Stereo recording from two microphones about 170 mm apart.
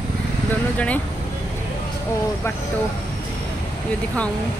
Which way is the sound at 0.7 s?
10° left (ahead or behind).